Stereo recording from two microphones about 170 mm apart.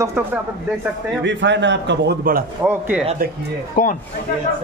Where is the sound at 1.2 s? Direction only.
90° right; by 2.4 s 65° right (ahead or behind).